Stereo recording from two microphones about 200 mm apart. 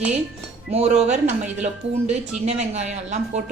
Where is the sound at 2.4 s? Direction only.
35° right (ahead or behind).